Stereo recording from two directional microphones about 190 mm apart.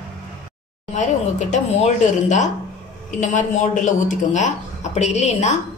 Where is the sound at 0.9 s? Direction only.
40° left (ahead or behind).